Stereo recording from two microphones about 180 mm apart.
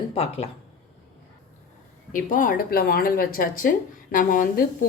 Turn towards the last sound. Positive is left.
turn(degrees=50)  # may be behind; listen again after turning